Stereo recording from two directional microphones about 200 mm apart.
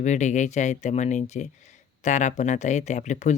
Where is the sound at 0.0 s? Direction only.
35° left (ahead or behind).